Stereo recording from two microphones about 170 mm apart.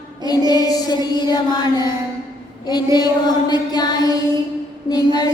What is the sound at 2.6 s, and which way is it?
Music, 25° left (ahead or behind).